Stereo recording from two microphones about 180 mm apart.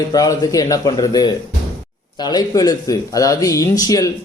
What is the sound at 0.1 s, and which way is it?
Speech, 20° left (ahead or behind).